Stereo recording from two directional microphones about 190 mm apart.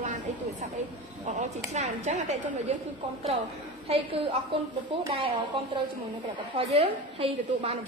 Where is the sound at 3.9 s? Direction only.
30° right (ahead or behind).